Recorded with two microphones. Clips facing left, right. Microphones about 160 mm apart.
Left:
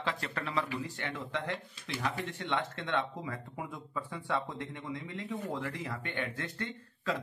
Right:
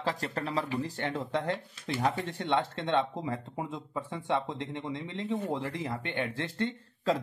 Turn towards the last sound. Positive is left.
turn(degrees=-30)  # may be behind; listen again after turning